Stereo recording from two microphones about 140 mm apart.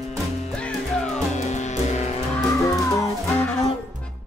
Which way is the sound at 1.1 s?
55° left (ahead or behind).